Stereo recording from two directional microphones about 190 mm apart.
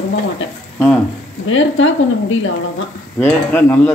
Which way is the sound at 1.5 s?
90° left.